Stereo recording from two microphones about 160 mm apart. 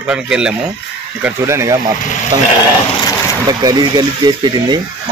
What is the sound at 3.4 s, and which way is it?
Speech, 25° right (ahead or behind).